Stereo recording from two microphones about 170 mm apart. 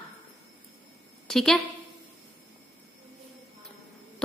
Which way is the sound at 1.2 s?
Centre (ahead or behind).